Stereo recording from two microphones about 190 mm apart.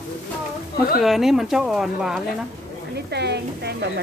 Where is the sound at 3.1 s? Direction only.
60° right (ahead or behind).